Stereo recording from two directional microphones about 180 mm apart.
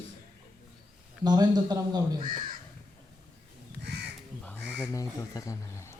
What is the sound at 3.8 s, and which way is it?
Crow, 70° right (ahead or behind).